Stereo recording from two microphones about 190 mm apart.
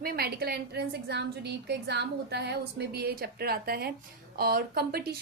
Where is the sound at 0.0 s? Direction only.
50° right (ahead or behind).